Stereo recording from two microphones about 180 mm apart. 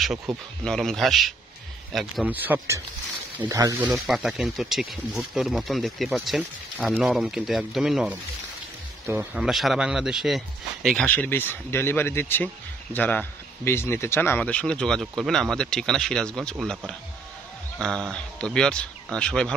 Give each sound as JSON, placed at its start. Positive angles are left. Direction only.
{"t": 0.3, "sound": "a man's voice", "side_deg": 0}
{"t": 4.1, "sound": "speech", "side_deg": 0}
{"t": 17.7, "sound": "speech", "side_deg": 5}